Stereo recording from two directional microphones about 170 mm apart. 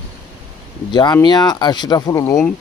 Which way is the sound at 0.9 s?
25° left (ahead or behind).